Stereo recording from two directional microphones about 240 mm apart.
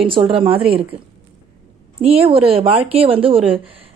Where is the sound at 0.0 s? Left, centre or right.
Right.